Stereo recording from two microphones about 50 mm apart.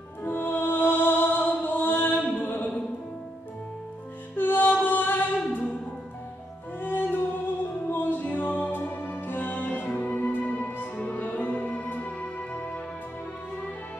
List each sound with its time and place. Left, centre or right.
0.2 s music: left
2.2 s mantra: left
4.4 s music: left
6.8 s music: left